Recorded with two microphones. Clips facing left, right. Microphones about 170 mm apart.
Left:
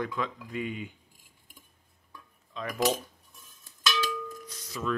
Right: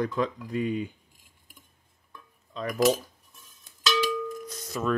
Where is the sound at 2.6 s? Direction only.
35° right (ahead or behind).